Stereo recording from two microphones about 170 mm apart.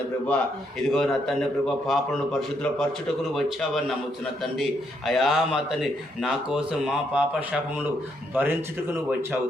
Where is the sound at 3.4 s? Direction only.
Centre (ahead or behind).